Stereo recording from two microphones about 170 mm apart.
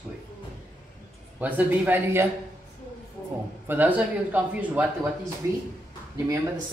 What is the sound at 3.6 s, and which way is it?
Speech, 10° right (ahead or behind).